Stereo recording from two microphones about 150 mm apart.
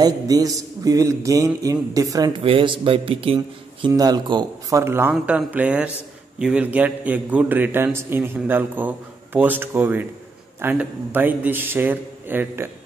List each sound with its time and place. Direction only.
0.0 s a man's voice: 25° right (ahead or behind)
2.4 s a man's voice: 35° right (ahead or behind)
3.8 s a man's voice: 25° right (ahead or behind)